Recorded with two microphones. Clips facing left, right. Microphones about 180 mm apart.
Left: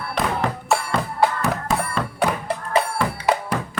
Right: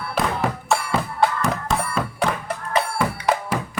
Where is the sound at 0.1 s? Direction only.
5° right (ahead or behind).